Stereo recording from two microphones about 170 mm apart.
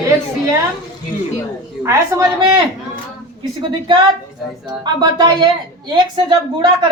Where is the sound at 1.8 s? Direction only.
15° right (ahead or behind).